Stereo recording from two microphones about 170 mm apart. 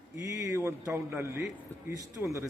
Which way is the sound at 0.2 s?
15° right (ahead or behind).